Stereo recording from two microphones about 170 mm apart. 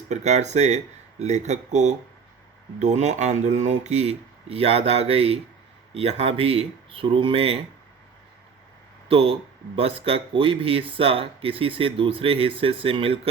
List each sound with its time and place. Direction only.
0.1 s speech: 40° right (ahead or behind)
9.0 s speech: 35° right (ahead or behind)